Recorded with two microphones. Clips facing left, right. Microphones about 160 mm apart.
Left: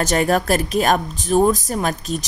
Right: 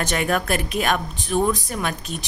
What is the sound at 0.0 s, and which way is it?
A woman's voice, 40° left (ahead or behind).